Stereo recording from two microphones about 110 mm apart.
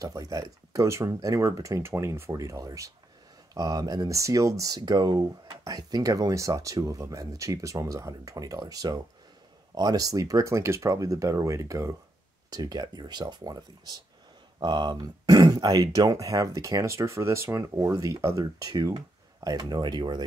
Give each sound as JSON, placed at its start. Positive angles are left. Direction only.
{"t": 0.0, "sound": "speech", "side_deg": -30}